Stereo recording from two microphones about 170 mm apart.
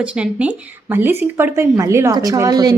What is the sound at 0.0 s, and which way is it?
A woman's voice, 5° right (ahead or behind).